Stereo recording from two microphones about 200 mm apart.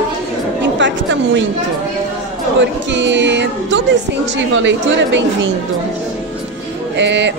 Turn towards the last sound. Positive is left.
turn(degrees=-60)  # may be behind; listen again after turning